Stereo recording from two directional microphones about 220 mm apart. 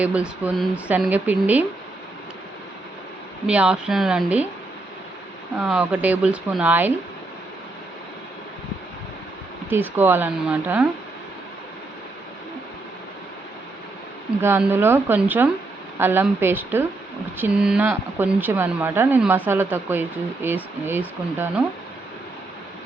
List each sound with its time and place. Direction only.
0.0 s speech: 5° right (ahead or behind)
3.4 s a woman's voice: 5° right (ahead or behind)
5.5 s speech: 5° right (ahead or behind)
9.6 s speech: 10° right (ahead or behind)
14.4 s speech: 10° right (ahead or behind)